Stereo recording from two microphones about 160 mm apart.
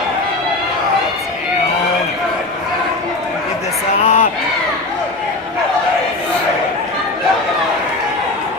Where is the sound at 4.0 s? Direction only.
40° left (ahead or behind).